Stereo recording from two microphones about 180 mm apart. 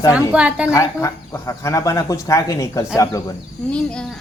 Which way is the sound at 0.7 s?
15° left (ahead or behind).